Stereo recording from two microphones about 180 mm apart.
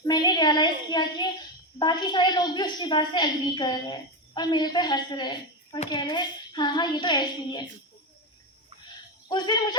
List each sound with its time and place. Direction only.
0.1 s a woman's voice: 25° left (ahead or behind)
9.3 s a woman's voice: 25° left (ahead or behind)